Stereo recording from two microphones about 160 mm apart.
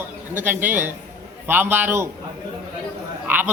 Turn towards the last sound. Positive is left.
turn(degrees=-10)  # may be behind; listen again after turning